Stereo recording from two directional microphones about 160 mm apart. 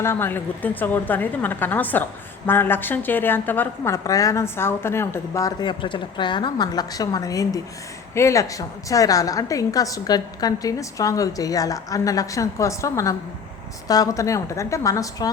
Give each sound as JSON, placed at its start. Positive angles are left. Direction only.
{"t": 0.0, "sound": "a woman's voice", "side_deg": 15}